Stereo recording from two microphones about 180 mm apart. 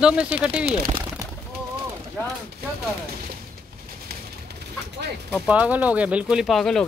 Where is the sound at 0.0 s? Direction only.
5° right (ahead or behind).